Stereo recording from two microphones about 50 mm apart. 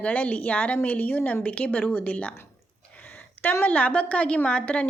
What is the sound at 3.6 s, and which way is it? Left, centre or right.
A woman's voice, left.